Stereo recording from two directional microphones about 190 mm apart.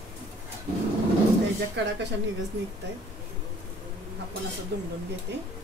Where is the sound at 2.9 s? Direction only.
65° right (ahead or behind).